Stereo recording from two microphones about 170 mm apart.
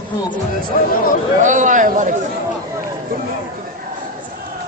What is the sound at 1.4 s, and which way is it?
Speech, 50° right (ahead or behind).